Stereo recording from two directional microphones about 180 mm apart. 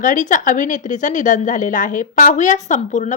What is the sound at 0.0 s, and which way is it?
Speech, 45° left (ahead or behind).